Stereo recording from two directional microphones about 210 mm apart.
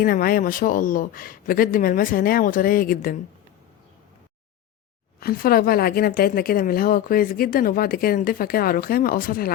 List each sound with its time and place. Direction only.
0.0 s speech: 45° left (ahead or behind)
5.2 s speech: 45° left (ahead or behind)